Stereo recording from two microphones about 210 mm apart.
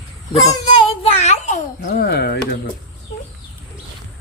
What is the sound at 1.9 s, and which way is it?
Speech, 50° left (ahead or behind).